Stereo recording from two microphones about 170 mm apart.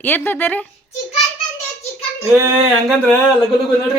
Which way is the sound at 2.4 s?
15° right (ahead or behind).